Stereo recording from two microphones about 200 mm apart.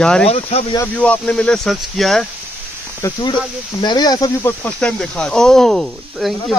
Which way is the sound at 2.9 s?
15° left (ahead or behind).